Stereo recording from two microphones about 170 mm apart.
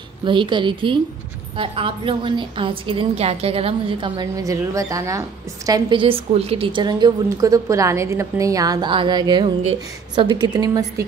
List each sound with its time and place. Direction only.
0.2 s a woman's voice: 30° right (ahead or behind)